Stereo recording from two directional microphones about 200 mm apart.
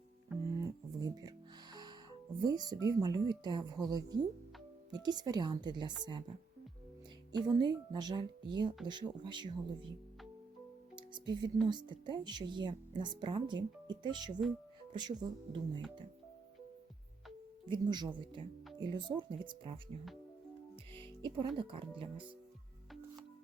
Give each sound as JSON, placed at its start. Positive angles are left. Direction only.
{"t": 0.4, "sound": "music", "side_deg": -15}
{"t": 2.4, "sound": "speech", "side_deg": -20}
{"t": 7.3, "sound": "speech", "side_deg": -20}
{"t": 10.9, "sound": "music", "side_deg": -20}
{"t": 11.6, "sound": "speech", "side_deg": -20}
{"t": 17.7, "sound": "speech", "side_deg": -20}
{"t": 20.9, "sound": "speech", "side_deg": -25}